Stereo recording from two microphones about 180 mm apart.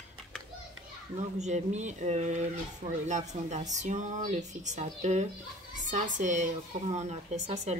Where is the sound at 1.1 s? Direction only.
40° right (ahead or behind).